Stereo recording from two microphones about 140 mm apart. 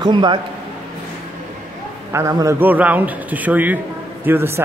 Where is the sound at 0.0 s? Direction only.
35° right (ahead or behind).